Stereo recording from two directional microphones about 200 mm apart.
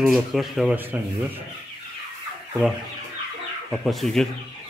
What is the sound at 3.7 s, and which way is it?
Speech, centre (ahead or behind).